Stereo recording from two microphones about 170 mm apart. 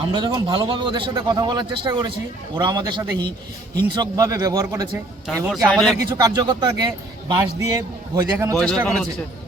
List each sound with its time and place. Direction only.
0.0 s a man's voice: 30° right (ahead or behind)
5.6 s a man's voice: centre (ahead or behind)
6.1 s a man's voice: 25° right (ahead or behind)
8.5 s a man's voice: 5° left (ahead or behind)